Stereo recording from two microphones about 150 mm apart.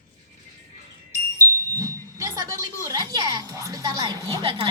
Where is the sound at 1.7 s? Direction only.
20° right (ahead or behind).